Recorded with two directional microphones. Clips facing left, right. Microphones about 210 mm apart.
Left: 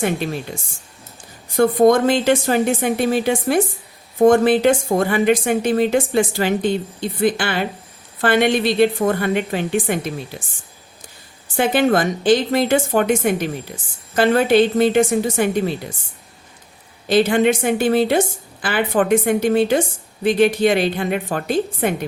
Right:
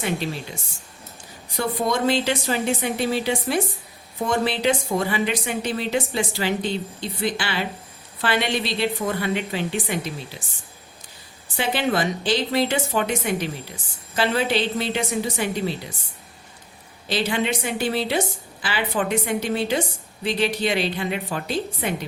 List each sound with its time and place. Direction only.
1.5 s a woman's voice: 50° left (ahead or behind)
11.5 s a woman's voice: 50° left (ahead or behind)
17.1 s a woman's voice: 50° left (ahead or behind)